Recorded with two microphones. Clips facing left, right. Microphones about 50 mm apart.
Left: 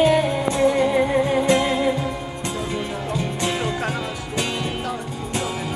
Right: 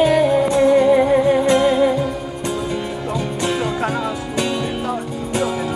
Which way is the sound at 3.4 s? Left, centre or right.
Centre.